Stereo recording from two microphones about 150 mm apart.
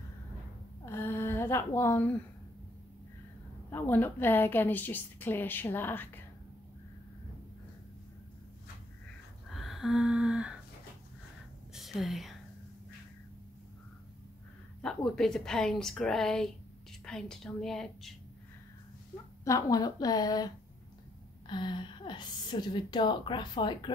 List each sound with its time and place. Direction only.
0.8 s a sound: 15° left (ahead or behind)
3.7 s a woman's voice: 15° left (ahead or behind)
9.5 s a sound: centre (ahead or behind)
11.7 s whispering: centre (ahead or behind)
14.8 s a woman's voice: 5° left (ahead or behind)
19.4 s a woman's voice: 25° left (ahead or behind)